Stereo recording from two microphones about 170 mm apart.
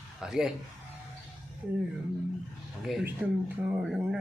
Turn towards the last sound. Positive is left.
turn(degrees=0)  # may be behind; listen again after turning